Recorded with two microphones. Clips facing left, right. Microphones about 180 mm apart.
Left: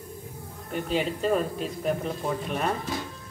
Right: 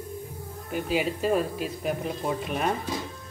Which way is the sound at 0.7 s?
5° right (ahead or behind).